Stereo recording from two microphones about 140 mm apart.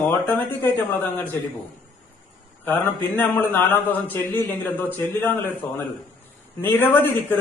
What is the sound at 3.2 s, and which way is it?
A man's voice, 15° left (ahead or behind).